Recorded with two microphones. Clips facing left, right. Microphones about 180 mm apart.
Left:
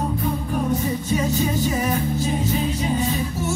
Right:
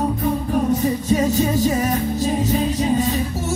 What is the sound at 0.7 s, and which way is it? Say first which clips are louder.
Music: right 3 dB; 40° right (ahead or behind).